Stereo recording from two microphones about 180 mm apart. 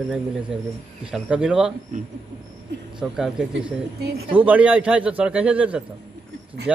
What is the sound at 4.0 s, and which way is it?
Speech, 65° right (ahead or behind).